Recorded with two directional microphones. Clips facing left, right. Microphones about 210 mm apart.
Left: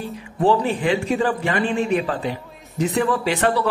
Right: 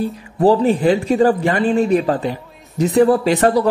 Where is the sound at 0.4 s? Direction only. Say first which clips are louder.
Right 5 dB; 40° right (ahead or behind).